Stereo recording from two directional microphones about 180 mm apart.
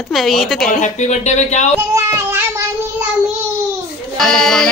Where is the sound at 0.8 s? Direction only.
40° left (ahead or behind).